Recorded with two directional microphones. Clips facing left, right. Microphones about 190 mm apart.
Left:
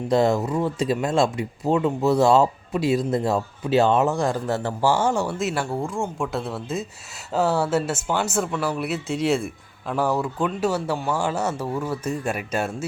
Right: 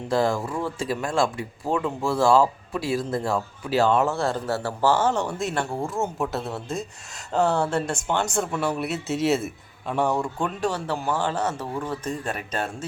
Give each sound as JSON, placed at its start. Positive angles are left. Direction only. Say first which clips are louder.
{"t": 0.1, "sound": "speech", "louder": "left 3 dB", "side_deg": 20}